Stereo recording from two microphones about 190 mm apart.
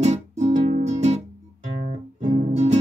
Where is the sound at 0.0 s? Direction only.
35° right (ahead or behind).